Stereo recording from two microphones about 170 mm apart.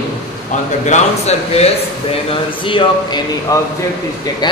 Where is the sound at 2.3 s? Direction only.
30° left (ahead or behind).